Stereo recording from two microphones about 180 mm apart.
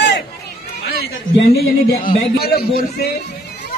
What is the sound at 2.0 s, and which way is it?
A man's voice, 55° left (ahead or behind).